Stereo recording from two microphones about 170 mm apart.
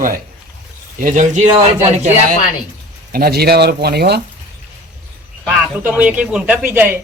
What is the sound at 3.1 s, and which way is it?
Speech, 65° right (ahead or behind).